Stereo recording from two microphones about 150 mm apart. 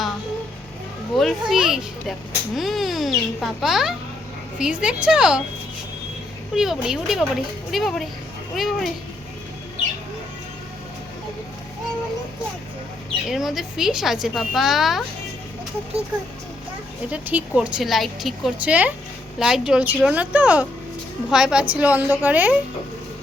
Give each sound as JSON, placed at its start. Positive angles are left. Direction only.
{"t": 1.1, "sound": "speech", "side_deg": 0}
{"t": 6.5, "sound": "speech", "side_deg": -5}
{"t": 13.3, "sound": "speech", "side_deg": 0}
{"t": 17.1, "sound": "a woman's voice", "side_deg": -10}